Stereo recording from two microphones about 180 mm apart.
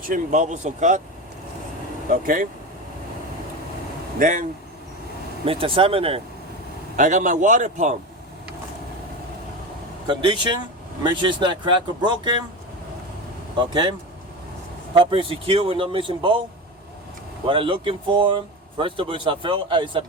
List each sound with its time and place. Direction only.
0.1 s a man's voice: 45° right (ahead or behind)
2.0 s a man's voice: 50° right (ahead or behind)
4.2 s a man's voice: 45° right (ahead or behind)
5.5 s speech: 30° right (ahead or behind)
6.9 s a man's voice: 45° right (ahead or behind)
10.1 s speech: 25° right (ahead or behind)
13.6 s speech: 25° right (ahead or behind)
14.9 s speech: 30° right (ahead or behind)
17.4 s speech: 30° right (ahead or behind)